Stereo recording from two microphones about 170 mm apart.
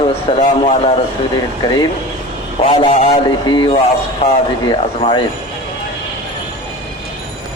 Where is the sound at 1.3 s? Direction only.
25° left (ahead or behind).